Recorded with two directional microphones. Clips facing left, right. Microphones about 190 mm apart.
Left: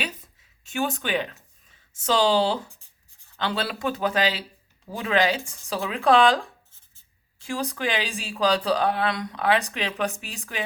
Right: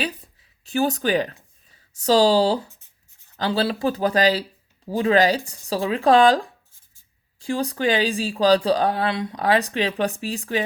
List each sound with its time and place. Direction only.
0.6 s speech: 35° right (ahead or behind)